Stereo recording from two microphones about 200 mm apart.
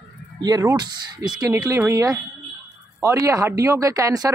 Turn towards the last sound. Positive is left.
turn(degrees=-15)  # may be behind; listen again after turning